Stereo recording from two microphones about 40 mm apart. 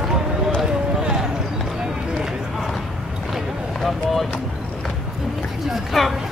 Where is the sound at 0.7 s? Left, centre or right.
Centre.